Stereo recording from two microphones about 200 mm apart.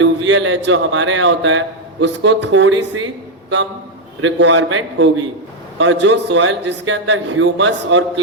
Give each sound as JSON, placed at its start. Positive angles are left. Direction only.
{"t": 0.0, "sound": "a man's voice", "side_deg": -70}
{"t": 4.2, "sound": "a man's voice", "side_deg": -65}